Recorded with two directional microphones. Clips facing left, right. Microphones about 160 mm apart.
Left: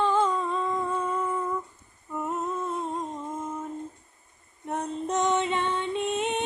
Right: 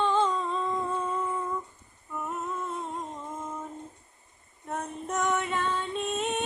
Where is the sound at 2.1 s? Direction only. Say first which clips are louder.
Left 4 dB; 20° left (ahead or behind).